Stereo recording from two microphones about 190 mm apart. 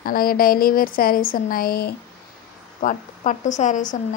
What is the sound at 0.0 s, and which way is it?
Speech, 50° left (ahead or behind).